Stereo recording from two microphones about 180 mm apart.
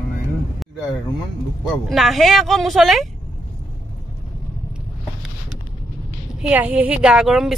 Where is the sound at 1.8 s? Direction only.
Centre (ahead or behind).